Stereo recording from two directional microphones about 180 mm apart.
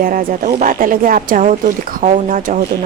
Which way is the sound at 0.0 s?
50° right (ahead or behind).